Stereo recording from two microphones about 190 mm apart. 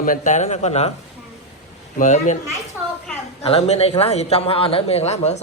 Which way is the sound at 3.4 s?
30° left (ahead or behind).